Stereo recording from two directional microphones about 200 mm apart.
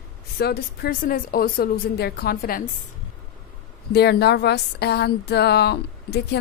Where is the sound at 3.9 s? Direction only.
55° left (ahead or behind).